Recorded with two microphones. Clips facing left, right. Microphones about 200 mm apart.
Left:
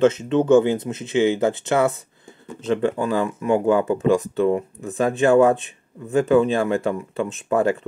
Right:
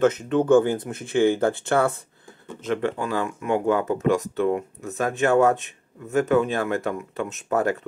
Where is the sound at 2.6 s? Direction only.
30° left (ahead or behind).